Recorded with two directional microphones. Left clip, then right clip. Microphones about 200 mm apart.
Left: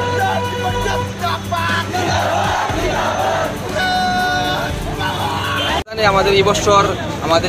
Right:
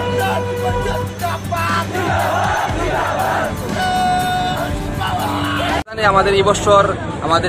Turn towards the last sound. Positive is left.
turn(degrees=-10)  # may be behind; listen again after turning